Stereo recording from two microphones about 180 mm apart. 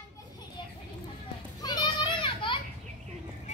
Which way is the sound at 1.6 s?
25° left (ahead or behind).